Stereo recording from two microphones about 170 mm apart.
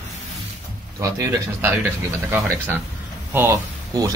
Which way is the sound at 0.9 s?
20° right (ahead or behind).